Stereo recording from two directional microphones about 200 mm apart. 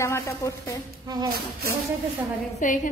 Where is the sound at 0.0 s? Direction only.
15° left (ahead or behind).